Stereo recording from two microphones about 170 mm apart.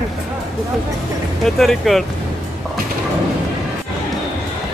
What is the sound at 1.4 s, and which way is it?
Speech, centre (ahead or behind).